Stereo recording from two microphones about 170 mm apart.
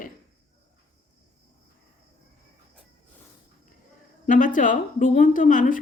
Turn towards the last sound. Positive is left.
turn(degrees=50)  # may be behind; listen again after turning